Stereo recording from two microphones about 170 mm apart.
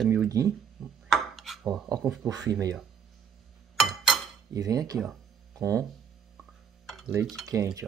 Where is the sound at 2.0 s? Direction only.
Centre (ahead or behind).